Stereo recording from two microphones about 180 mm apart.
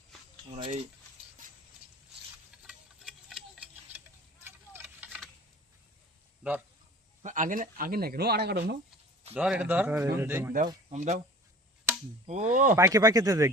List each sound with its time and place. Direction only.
0.5 s speech: 35° right (ahead or behind)
2.6 s tick-tock: centre (ahead or behind)
7.2 s speech: 45° right (ahead or behind); by 8.7 s 65° right (ahead or behind)
9.3 s a man's voice: 5° right (ahead or behind)
10.8 s speech: 40° right (ahead or behind)
12.2 s speech: 40° right (ahead or behind)
12.7 s speech: 15° right (ahead or behind)